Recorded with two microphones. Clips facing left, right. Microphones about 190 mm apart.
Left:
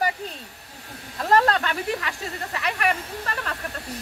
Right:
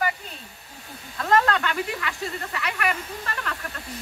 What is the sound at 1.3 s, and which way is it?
Speech, 35° left (ahead or behind).